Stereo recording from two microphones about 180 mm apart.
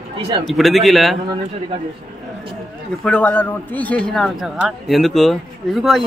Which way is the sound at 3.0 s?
10° left (ahead or behind).